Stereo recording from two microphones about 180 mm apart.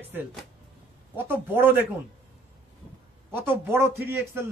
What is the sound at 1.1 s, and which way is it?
Speech, 10° right (ahead or behind).